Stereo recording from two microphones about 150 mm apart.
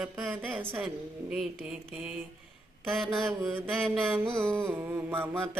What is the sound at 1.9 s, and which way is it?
Mantra, 5° right (ahead or behind).